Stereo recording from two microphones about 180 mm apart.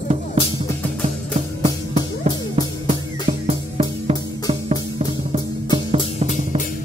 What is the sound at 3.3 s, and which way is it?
Music, 30° right (ahead or behind).